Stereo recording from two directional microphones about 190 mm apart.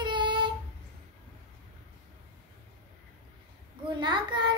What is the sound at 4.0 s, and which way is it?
Child singing, 25° right (ahead or behind).